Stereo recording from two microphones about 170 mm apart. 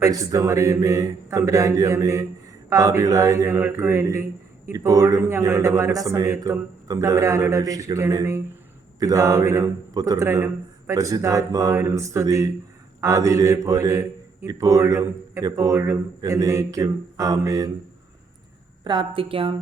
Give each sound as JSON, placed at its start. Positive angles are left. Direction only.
{"t": 0.0, "sound": "a man's voice", "side_deg": -20}
{"t": 18.9, "sound": "a woman's voice", "side_deg": -30}